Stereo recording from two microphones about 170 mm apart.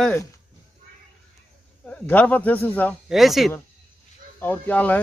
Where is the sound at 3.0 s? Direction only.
Centre (ahead or behind).